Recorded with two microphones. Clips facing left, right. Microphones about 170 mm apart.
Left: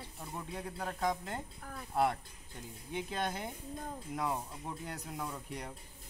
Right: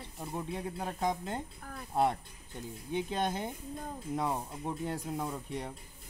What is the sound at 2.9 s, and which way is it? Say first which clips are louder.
Speech: right 4 dB; 20° right (ahead or behind).